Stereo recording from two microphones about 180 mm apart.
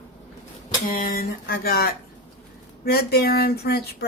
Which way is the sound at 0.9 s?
55° left (ahead or behind).